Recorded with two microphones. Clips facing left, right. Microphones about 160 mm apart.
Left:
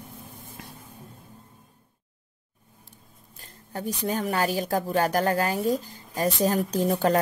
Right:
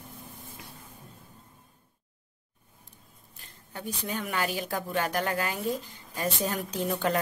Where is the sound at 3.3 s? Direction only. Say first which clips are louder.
Left 6 dB; 40° left (ahead or behind).